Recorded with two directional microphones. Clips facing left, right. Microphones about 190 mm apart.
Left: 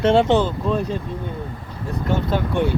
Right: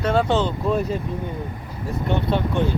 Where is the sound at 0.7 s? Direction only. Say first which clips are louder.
Even; 5° right (ahead or behind).